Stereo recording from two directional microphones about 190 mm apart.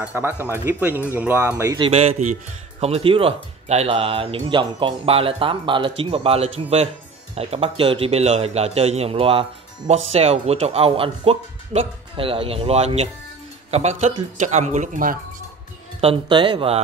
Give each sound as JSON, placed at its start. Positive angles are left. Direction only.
{"t": 0.0, "sound": "speech", "side_deg": -10}
{"t": 1.8, "sound": "a man's voice", "side_deg": -30}
{"t": 16.0, "sound": "speech", "side_deg": -25}